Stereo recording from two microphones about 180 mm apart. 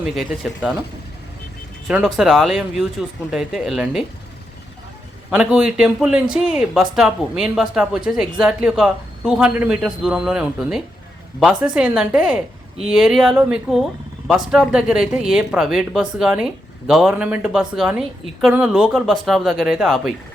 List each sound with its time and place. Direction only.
0.2 s speech: centre (ahead or behind)
1.9 s speech: centre (ahead or behind)
5.3 s speech: 5° right (ahead or behind)